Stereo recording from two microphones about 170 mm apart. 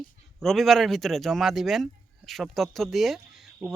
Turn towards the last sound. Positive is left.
turn(degrees=-10)  # may be behind; listen again after turning